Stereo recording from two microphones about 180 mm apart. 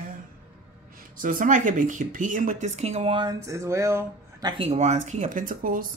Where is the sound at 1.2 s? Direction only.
50° right (ahead or behind).